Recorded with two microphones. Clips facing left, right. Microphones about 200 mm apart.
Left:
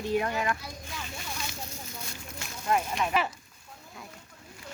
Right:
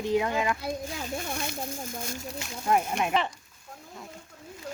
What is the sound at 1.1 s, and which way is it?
Speech, 50° right (ahead or behind).